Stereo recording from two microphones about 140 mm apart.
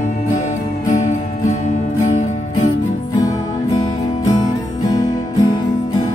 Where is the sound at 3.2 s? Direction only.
25° left (ahead or behind).